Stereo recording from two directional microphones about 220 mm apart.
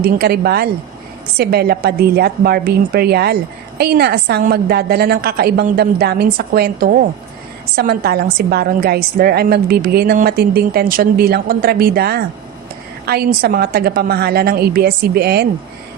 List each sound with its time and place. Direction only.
0.0 s a woman's voice: 45° right (ahead or behind)